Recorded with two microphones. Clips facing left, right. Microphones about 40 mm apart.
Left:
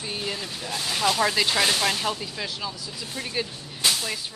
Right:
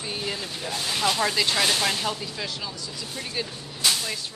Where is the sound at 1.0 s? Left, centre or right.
Centre.